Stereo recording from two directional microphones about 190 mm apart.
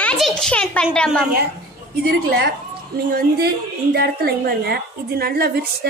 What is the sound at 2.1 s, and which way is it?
A woman's voice, 55° right (ahead or behind).